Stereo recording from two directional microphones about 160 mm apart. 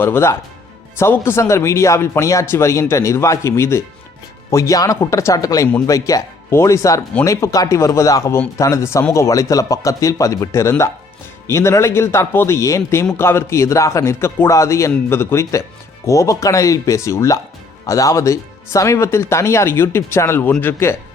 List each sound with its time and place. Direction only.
0.0 s speech: 15° left (ahead or behind)